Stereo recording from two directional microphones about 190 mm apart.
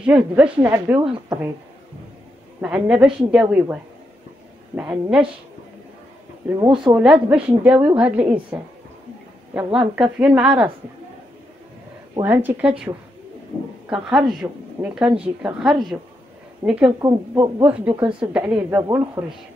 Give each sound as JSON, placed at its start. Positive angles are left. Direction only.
{"t": 0.0, "sound": "speech", "side_deg": -10}
{"t": 1.0, "sound": "speech", "side_deg": -25}
{"t": 2.6, "sound": "speech", "side_deg": -5}
{"t": 4.7, "sound": "speech", "side_deg": -5}
{"t": 6.6, "sound": "speech", "side_deg": -25}
{"t": 6.9, "sound": "speech", "side_deg": -5}
{"t": 12.2, "sound": "speech", "side_deg": -10}